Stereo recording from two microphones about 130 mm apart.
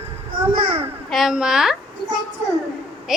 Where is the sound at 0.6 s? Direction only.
45° right (ahead or behind).